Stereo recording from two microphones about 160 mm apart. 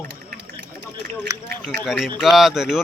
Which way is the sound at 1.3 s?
20° right (ahead or behind).